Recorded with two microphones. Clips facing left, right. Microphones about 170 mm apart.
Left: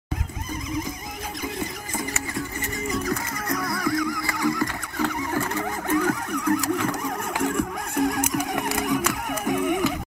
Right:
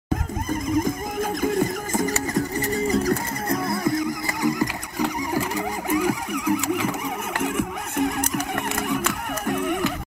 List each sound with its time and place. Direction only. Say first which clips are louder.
0.5 s neigh: right 7 dB; 50° right (ahead or behind)
1.4 s a sound: right 8 dB; 45° right (ahead or behind); by 5.0 s 20° right (ahead or behind)
5.0 s neigh: right 1 dB; 10° right (ahead or behind)
8.4 s printer: left 1 dB; 5° left (ahead or behind)
9.3 s music: left 1 dB; 5° left (ahead or behind)